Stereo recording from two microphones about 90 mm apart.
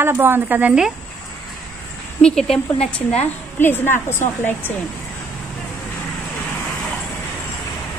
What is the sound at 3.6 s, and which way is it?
Speech, 25° left (ahead or behind).